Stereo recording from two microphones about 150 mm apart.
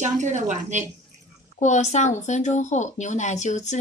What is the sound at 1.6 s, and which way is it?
Speech, 50° left (ahead or behind).